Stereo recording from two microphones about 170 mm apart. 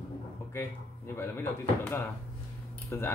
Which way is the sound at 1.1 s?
15° left (ahead or behind).